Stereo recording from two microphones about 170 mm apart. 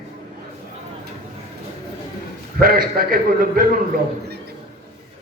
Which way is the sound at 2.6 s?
60° right (ahead or behind).